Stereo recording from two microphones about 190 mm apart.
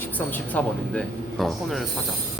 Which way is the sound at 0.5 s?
5° left (ahead or behind).